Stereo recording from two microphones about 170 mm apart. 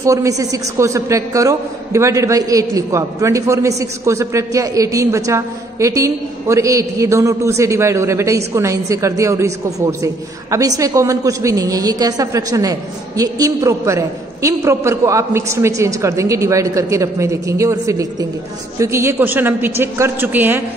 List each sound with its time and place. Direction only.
0.0 s a woman's voice: 20° right (ahead or behind)